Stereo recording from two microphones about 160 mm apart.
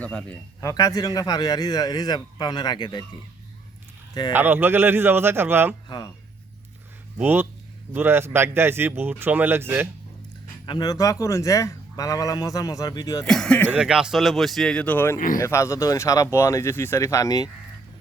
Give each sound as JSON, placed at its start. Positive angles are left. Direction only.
{"t": 0.0, "sound": "speech", "side_deg": 10}
{"t": 0.6, "sound": "speech", "side_deg": 20}
{"t": 4.3, "sound": "speech", "side_deg": -15}
{"t": 7.2, "sound": "speech", "side_deg": -15}
{"t": 10.7, "sound": "speech", "side_deg": 25}
{"t": 13.2, "sound": "speech", "side_deg": 5}
{"t": 13.7, "sound": "speech", "side_deg": -5}